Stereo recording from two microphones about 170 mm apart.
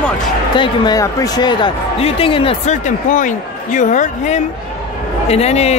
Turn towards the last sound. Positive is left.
turn(degrees=40)  # may be behind; listen again after turning